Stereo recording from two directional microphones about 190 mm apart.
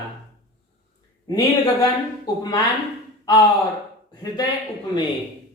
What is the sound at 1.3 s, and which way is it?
A man's voice, 20° left (ahead or behind).